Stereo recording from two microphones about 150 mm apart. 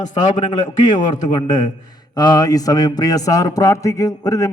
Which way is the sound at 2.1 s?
30° left (ahead or behind).